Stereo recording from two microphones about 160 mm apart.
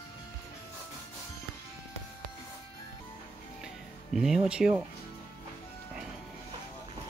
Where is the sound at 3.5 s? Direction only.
Centre (ahead or behind).